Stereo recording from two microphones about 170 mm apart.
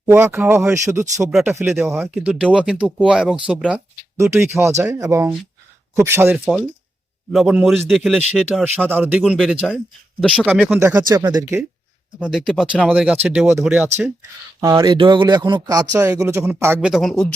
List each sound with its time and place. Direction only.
0.0 s speech: 15° right (ahead or behind)
6.4 s speech: centre (ahead or behind)
10.4 s speech: 10° right (ahead or behind)
12.2 s speech: 5° right (ahead or behind)